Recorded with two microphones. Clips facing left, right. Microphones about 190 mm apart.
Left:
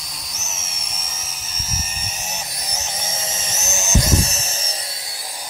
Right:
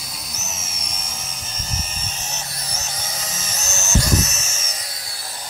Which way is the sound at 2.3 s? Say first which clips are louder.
Left 1 dB; 15° left (ahead or behind).